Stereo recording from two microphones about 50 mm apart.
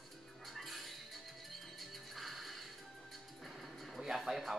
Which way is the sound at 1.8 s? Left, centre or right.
Centre.